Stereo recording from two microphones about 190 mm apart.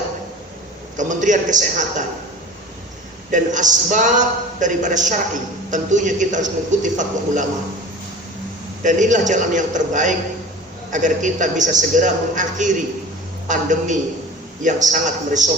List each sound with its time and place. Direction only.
0.9 s speech: 40° right (ahead or behind)
3.3 s speech: 40° right (ahead or behind)
8.8 s speech: 40° right (ahead or behind)